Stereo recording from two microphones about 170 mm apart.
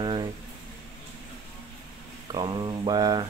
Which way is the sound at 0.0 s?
25° right (ahead or behind).